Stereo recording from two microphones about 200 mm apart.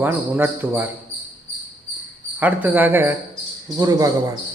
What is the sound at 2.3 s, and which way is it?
A man's voice, 10° right (ahead or behind).